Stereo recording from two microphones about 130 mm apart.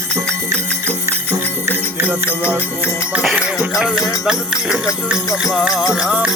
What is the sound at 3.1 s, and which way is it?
Music, 10° right (ahead or behind).